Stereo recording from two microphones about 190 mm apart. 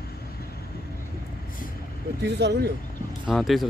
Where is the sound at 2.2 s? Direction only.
65° right (ahead or behind).